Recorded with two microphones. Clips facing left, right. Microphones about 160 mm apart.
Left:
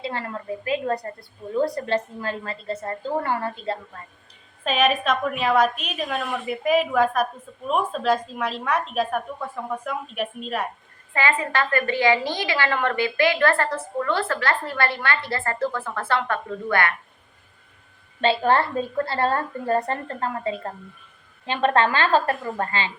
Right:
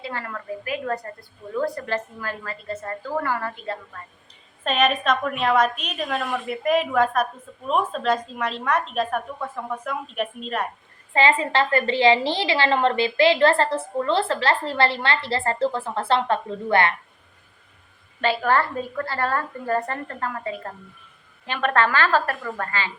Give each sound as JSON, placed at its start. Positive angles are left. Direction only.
{"t": 0.0, "sound": "a woman's voice", "side_deg": 25}
{"t": 4.6, "sound": "a woman's voice", "side_deg": 5}
{"t": 11.1, "sound": "a woman's voice", "side_deg": -25}
{"t": 18.2, "sound": "a woman's voice", "side_deg": 25}